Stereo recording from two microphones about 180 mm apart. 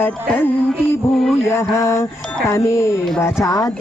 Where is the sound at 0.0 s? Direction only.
10° left (ahead or behind).